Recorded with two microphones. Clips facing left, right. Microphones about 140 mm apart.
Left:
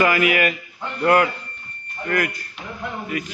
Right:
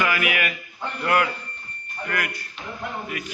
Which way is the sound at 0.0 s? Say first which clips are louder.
Left 6 dB; 35° left (ahead or behind).